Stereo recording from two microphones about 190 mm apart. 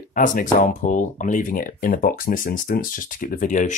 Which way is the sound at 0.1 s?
45° left (ahead or behind).